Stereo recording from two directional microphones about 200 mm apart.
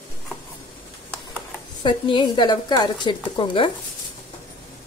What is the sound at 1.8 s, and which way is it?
A woman's voice, 25° left (ahead or behind).